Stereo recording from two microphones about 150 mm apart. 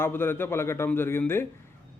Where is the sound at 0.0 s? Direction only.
15° left (ahead or behind).